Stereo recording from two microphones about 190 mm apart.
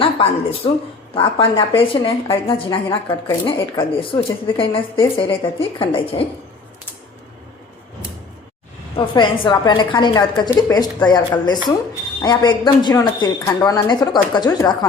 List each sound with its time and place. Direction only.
0.0 s a woman's voice: 30° left (ahead or behind)
9.1 s a woman's voice: 25° left (ahead or behind)